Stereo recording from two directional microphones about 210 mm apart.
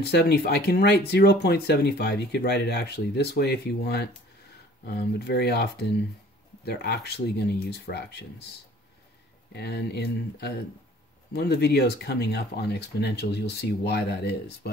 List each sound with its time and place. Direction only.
0.0 s speech: 50° left (ahead or behind)
9.5 s speech: 50° left (ahead or behind)